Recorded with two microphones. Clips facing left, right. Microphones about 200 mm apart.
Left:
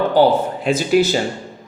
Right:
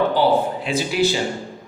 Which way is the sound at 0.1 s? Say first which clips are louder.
Left 3 dB; 45° left (ahead or behind).